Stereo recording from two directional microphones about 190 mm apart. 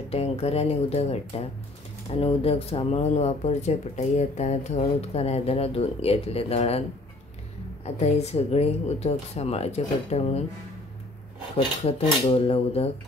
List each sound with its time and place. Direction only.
0.1 s speech: 30° left (ahead or behind)
7.8 s speech: 35° left (ahead or behind)
12.3 s speech: 30° left (ahead or behind)